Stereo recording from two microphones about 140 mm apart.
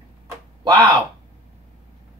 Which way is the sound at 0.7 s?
35° right (ahead or behind).